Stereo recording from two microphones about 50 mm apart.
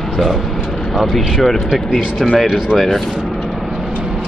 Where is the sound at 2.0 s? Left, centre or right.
Centre.